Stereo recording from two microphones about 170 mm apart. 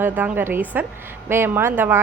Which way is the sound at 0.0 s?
10° right (ahead or behind).